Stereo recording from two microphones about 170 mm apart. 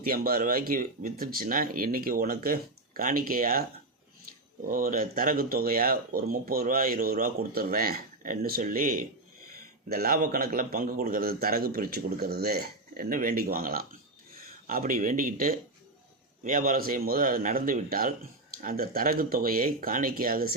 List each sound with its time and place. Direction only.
0.0 s speech: 55° right (ahead or behind)
4.7 s speech: 55° right (ahead or behind)